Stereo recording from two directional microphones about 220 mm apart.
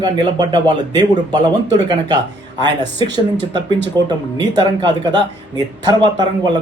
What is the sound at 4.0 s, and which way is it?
A man's voice, 20° right (ahead or behind).